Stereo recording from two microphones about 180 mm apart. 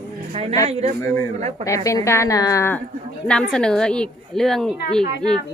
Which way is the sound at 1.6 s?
15° left (ahead or behind).